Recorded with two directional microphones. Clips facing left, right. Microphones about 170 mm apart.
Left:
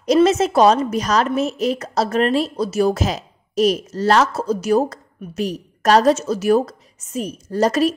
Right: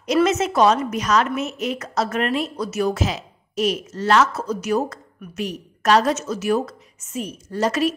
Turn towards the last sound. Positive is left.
turn(degrees=40)  # may be behind; listen again after turning